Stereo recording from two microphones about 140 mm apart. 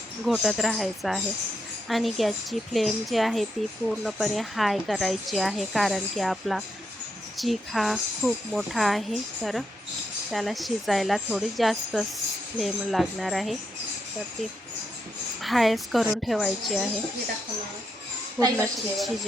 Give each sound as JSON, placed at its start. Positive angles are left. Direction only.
{"t": 0.3, "sound": "a woman's voice", "side_deg": 0}
{"t": 15.4, "sound": "a woman's voice", "side_deg": 0}
{"t": 18.3, "sound": "a woman's voice", "side_deg": -25}